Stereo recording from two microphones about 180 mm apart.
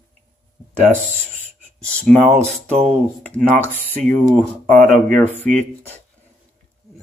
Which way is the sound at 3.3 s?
10° left (ahead or behind).